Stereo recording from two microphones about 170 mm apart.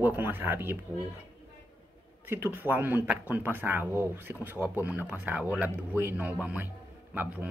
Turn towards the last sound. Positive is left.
turn(degrees=-10)  # may be behind; listen again after turning